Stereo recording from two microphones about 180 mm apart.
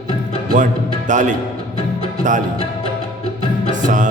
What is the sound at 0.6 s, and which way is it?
Speech, 45° right (ahead or behind).